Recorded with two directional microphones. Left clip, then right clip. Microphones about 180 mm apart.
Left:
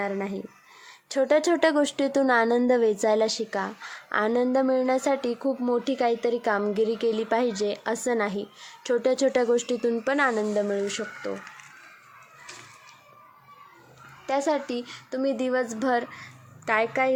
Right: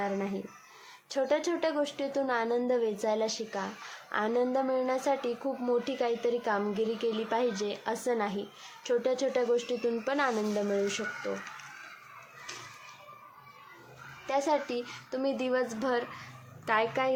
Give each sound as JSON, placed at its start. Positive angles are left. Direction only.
{"t": 1.1, "sound": "a woman's voice", "side_deg": 30}
{"t": 14.3, "sound": "speech", "side_deg": 30}